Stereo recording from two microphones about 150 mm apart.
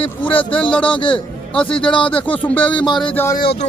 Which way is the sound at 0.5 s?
5° left (ahead or behind).